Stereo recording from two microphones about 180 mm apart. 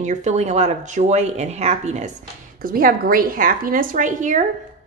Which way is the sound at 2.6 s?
50° right (ahead or behind).